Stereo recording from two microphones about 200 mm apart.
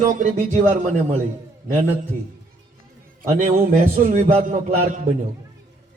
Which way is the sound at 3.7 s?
40° right (ahead or behind).